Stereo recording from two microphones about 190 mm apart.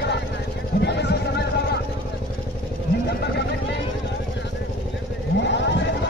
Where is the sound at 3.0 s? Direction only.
60° left (ahead or behind).